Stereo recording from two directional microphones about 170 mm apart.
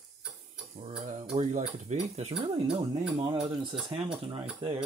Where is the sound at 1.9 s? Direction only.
40° right (ahead or behind).